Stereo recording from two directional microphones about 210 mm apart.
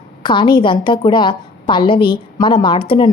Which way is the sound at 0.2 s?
20° left (ahead or behind).